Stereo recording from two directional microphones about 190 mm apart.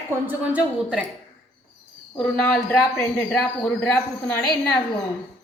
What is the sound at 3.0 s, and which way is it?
A woman's voice, 5° left (ahead or behind).